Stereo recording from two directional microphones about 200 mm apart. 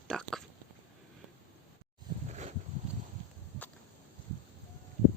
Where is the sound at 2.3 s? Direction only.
35° right (ahead or behind).